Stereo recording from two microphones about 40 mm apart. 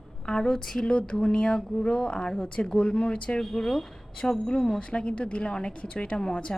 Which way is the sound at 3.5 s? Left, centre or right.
Centre.